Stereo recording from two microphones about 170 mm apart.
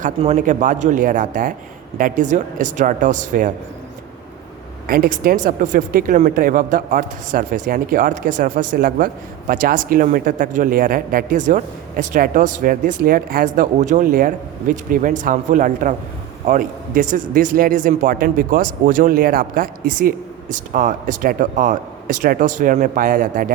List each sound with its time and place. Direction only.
0.3 s a man's voice: 50° right (ahead or behind)
4.9 s a man's voice: 55° right (ahead or behind)